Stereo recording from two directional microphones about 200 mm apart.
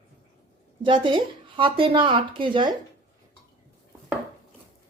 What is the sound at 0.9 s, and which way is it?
Speech, 25° right (ahead or behind).